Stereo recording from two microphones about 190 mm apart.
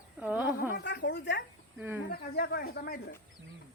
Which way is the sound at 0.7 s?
65° left (ahead or behind).